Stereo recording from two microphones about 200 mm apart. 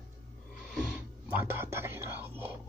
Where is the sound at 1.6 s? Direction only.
10° right (ahead or behind).